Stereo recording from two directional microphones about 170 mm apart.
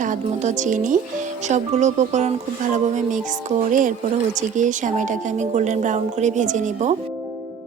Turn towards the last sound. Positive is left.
turn(degrees=-45)  # may be behind; listen again after turning